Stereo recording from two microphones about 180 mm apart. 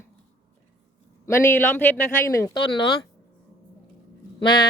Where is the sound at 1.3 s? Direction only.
10° left (ahead or behind).